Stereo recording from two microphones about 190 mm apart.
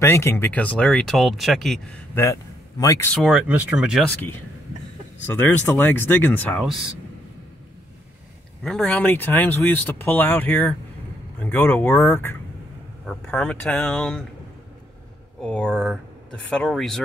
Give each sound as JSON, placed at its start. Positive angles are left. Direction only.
{"t": 0.0, "sound": "speech", "side_deg": 15}
{"t": 2.8, "sound": "speech", "side_deg": 15}
{"t": 3.3, "sound": "speech", "side_deg": -5}
{"t": 5.2, "sound": "speech", "side_deg": 10}
{"t": 8.6, "sound": "speech", "side_deg": 5}
{"t": 15.4, "sound": "speech", "side_deg": 5}